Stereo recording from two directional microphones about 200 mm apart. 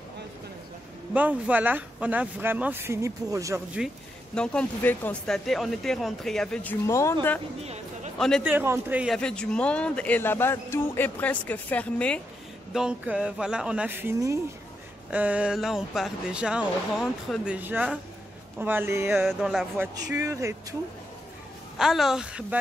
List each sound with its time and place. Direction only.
1.1 s speech: 5° right (ahead or behind)
4.4 s a man's voice: 5° left (ahead or behind)
7.6 s a sound: 35° right (ahead or behind)
8.5 s a man's voice: 10° right (ahead or behind); by 12.2 s 5° left (ahead or behind)
12.7 s a man's voice: 5° right (ahead or behind)
20.0 s speech: 15° right (ahead or behind)
21.7 s a man's voice: centre (ahead or behind)